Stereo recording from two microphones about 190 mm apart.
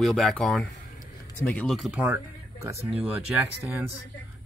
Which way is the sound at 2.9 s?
5° right (ahead or behind).